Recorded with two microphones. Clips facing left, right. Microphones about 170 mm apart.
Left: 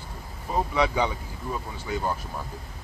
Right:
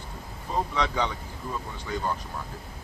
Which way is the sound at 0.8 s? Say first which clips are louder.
Left 3 dB; 10° left (ahead or behind).